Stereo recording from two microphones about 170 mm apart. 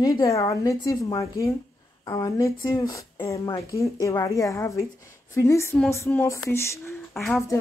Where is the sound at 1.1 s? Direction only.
20° left (ahead or behind).